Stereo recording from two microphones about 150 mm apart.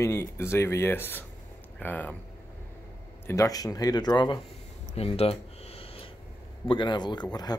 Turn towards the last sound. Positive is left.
turn(degrees=30)  # may be behind; listen again after turning